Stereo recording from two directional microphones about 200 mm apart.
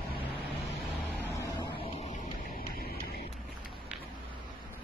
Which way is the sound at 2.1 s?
45° left (ahead or behind).